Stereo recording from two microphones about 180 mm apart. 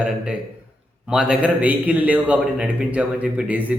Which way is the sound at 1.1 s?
5° right (ahead or behind).